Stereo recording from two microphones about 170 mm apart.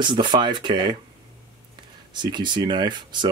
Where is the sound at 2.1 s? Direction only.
25° right (ahead or behind).